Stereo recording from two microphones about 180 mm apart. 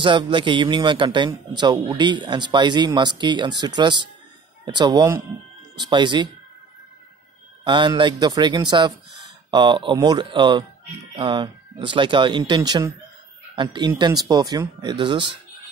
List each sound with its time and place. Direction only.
0.0 s a man's voice: 25° right (ahead or behind)
7.6 s a man's voice: 25° right (ahead or behind)